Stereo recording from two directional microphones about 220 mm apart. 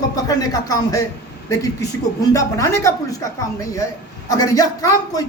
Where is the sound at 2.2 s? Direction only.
15° left (ahead or behind).